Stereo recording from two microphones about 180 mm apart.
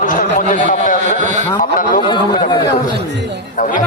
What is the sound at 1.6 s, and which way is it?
Speech, 50° left (ahead or behind).